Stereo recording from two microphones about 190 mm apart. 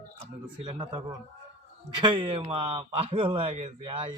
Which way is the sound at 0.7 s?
25° right (ahead or behind).